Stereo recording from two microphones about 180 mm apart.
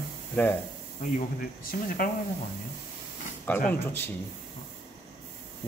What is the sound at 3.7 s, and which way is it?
Speech, 10° left (ahead or behind).